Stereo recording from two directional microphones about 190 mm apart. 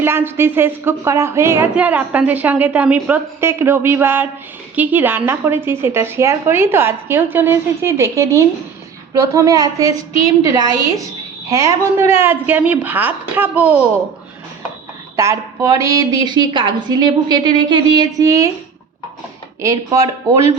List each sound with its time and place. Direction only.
0.0 s a woman's voice: 10° right (ahead or behind)
15.1 s a woman's voice: 15° right (ahead or behind)
19.6 s speech: 15° right (ahead or behind)